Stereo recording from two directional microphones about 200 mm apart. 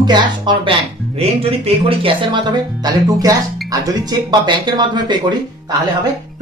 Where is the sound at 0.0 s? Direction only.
20° right (ahead or behind).